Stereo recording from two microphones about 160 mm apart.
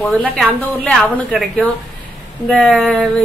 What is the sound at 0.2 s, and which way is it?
Speech, 10° right (ahead or behind).